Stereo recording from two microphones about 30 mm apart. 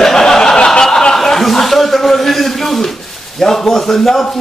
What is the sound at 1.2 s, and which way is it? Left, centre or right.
Speech, centre.